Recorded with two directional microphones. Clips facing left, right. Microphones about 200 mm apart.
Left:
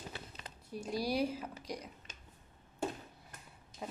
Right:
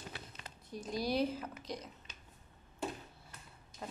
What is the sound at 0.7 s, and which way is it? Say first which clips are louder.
Speech: left 1 dB; 10° left (ahead or behind).